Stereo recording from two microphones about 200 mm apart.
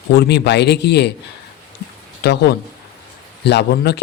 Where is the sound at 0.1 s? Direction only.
55° left (ahead or behind).